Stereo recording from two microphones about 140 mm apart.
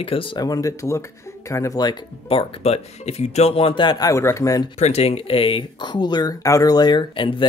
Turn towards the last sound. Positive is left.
turn(degrees=35)  # may be behind; listen again after turning